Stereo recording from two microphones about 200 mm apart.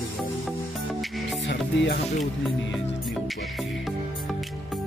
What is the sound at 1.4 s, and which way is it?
Music, 60° left (ahead or behind).